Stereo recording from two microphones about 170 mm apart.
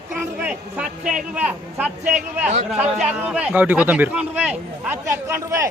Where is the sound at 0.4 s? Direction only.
5° right (ahead or behind).